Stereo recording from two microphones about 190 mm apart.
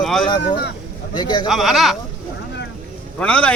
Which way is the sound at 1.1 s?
25° left (ahead or behind).